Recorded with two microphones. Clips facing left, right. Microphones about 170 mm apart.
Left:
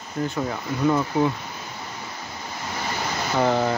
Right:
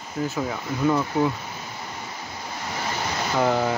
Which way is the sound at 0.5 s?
Centre (ahead or behind).